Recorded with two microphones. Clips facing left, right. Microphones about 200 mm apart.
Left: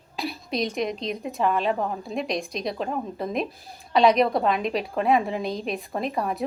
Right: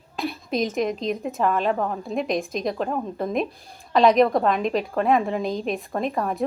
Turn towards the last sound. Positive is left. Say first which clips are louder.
# right 2 dB
turn(degrees=0)  # may be behind; listen again after turning